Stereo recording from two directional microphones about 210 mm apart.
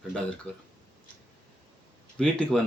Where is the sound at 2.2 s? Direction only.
5° left (ahead or behind).